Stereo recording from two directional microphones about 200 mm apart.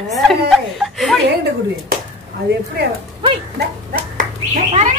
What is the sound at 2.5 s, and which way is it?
Speech, 55° right (ahead or behind).